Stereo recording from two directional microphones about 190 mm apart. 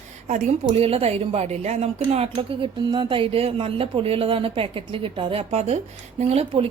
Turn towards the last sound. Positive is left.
turn(degrees=-30)  # may be behind; listen again after turning